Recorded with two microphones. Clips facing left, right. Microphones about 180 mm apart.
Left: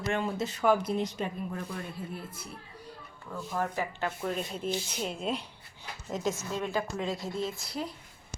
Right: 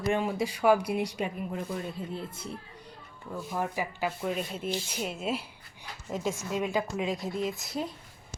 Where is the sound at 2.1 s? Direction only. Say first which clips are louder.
Right 4 dB; 25° right (ahead or behind).